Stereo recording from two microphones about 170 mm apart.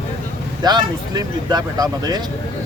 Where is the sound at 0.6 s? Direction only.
25° right (ahead or behind).